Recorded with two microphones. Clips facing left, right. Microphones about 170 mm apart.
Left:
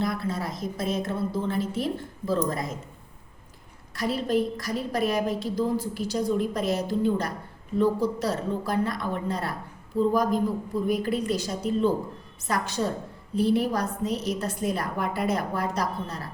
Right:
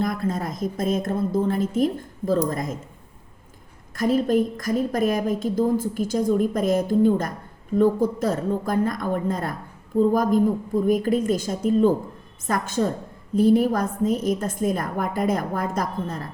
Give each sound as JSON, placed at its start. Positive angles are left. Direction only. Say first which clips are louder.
{"t": 0.0, "sound": "a woman's voice", "louder": "right 3 dB", "side_deg": -45}
{"t": 3.9, "sound": "a woman's voice", "louder": "right 5 dB", "side_deg": -45}